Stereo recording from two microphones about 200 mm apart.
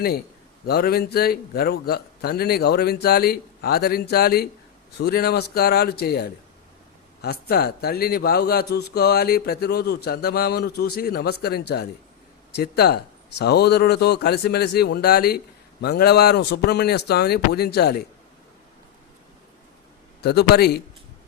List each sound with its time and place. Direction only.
0.6 s a man's voice: 50° left (ahead or behind)
20.2 s a man's voice: 55° left (ahead or behind)